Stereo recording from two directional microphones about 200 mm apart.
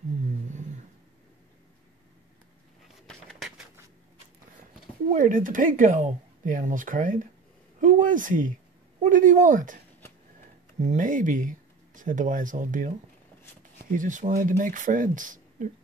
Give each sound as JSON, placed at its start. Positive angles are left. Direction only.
{"t": 3.1, "sound": "a sound", "side_deg": 0}
{"t": 5.1, "sound": "speech", "side_deg": -40}
{"t": 10.8, "sound": "speech", "side_deg": -40}